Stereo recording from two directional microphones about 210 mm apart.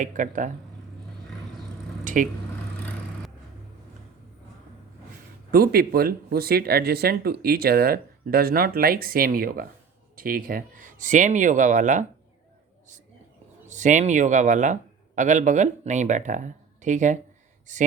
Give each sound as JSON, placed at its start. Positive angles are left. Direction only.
{"t": 0.0, "sound": "speech", "side_deg": -40}
{"t": 5.5, "sound": "speech", "side_deg": -45}
{"t": 13.7, "sound": "speech", "side_deg": -35}